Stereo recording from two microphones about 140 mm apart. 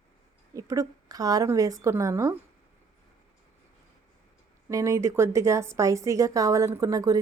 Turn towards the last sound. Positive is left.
turn(degrees=-25)  # may be behind; listen again after turning